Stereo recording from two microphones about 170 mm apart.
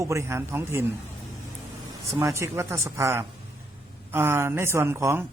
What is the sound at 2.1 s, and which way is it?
Speech, 15° right (ahead or behind).